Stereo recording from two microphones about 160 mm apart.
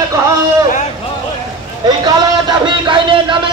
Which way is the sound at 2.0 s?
25° right (ahead or behind).